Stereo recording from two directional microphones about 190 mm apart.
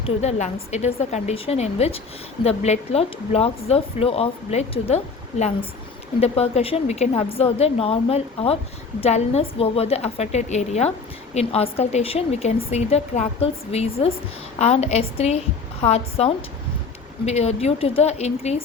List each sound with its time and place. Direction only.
0.0 s speech: 35° left (ahead or behind)
6.1 s speech: 30° left (ahead or behind)